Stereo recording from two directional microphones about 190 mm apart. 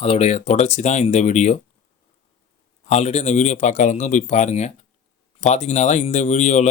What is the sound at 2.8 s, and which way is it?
Speech, 35° left (ahead or behind).